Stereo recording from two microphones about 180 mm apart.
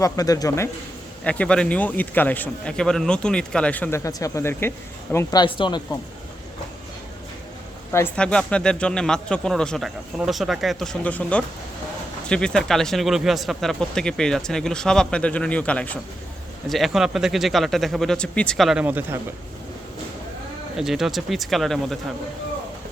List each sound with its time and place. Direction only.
0.0 s a man's voice: 20° left (ahead or behind)
7.9 s speech: 10° left (ahead or behind); by 19.2 s 10° right (ahead or behind)
20.7 s speech: centre (ahead or behind)